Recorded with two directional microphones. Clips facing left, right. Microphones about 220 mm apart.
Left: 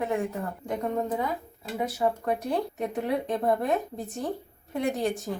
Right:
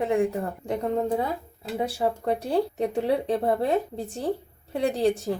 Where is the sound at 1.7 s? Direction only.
30° right (ahead or behind).